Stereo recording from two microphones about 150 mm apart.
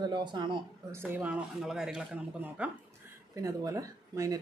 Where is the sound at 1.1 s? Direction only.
10° right (ahead or behind).